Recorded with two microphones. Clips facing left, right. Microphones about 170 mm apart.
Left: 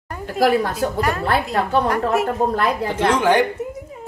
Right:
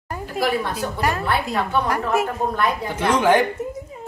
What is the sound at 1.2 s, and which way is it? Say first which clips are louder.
Speech: left 2 dB; 40° left (ahead or behind).